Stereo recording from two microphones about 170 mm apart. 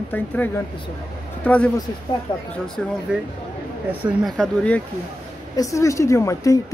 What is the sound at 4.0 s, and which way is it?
Speech, 5° right (ahead or behind).